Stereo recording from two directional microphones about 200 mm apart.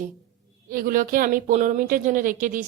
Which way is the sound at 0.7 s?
45° right (ahead or behind).